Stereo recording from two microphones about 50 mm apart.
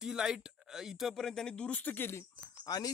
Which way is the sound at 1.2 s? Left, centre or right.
Centre.